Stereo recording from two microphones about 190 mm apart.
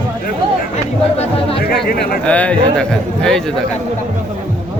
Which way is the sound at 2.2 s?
5° left (ahead or behind).